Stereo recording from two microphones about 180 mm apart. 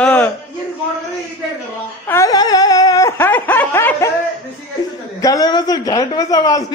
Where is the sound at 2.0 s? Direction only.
15° left (ahead or behind).